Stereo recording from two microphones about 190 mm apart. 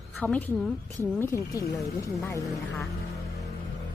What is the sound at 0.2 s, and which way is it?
Speech, 10° left (ahead or behind).